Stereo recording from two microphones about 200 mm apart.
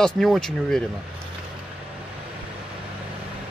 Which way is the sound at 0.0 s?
Centre (ahead or behind).